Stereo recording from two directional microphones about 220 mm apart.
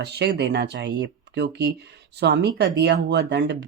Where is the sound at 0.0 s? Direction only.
50° right (ahead or behind).